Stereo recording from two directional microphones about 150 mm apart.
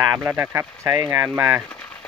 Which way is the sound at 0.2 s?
15° right (ahead or behind).